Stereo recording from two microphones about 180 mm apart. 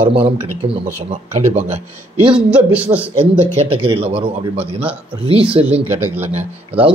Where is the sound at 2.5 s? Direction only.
10° right (ahead or behind).